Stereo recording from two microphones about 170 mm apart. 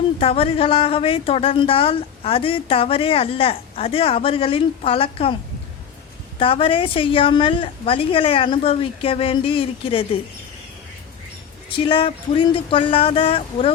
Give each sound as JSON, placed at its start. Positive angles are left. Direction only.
{"t": 0.2, "sound": "a woman's voice", "side_deg": 35}
{"t": 6.4, "sound": "a woman's voice", "side_deg": 30}
{"t": 11.9, "sound": "a woman's voice", "side_deg": 30}